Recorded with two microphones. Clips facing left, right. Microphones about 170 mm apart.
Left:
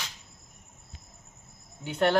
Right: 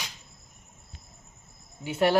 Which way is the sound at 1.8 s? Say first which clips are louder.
Right 1 dB; 10° right (ahead or behind).